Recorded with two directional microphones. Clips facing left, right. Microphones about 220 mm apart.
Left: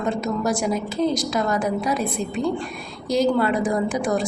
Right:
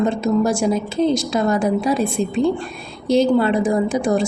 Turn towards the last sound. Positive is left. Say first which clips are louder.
# right 4 dB
turn(degrees=-25)  # may be behind; listen again after turning